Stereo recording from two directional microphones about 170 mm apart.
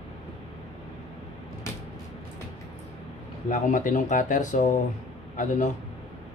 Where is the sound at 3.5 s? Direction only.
50° left (ahead or behind).